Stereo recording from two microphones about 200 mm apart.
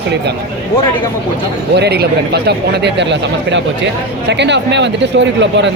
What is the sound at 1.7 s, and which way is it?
A man's voice, 55° right (ahead or behind).